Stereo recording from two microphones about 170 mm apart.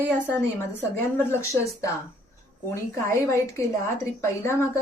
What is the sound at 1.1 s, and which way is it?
A woman's voice, 15° left (ahead or behind).